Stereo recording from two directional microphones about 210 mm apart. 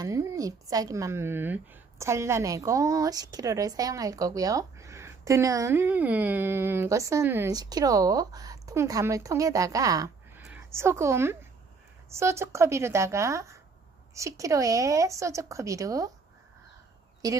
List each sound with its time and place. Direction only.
0.0 s a woman's voice: 15° right (ahead or behind)
17.2 s speech: 15° right (ahead or behind)